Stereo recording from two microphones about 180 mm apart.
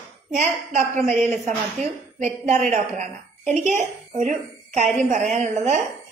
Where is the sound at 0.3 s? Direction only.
45° right (ahead or behind).